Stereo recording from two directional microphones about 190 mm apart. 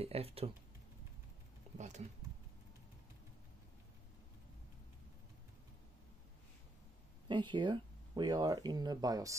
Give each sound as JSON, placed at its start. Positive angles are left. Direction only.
{"t": 0.0, "sound": "speech", "side_deg": -30}
{"t": 1.8, "sound": "speech", "side_deg": -40}
{"t": 7.2, "sound": "speech", "side_deg": -25}